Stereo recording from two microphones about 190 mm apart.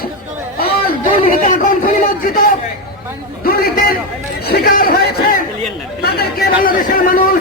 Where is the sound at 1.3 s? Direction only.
45° left (ahead or behind).